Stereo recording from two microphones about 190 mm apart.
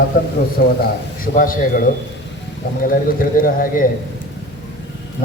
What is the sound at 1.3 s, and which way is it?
Speech, 45° left (ahead or behind).